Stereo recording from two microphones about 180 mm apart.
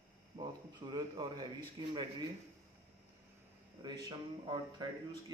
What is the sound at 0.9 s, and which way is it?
Speech, 20° right (ahead or behind).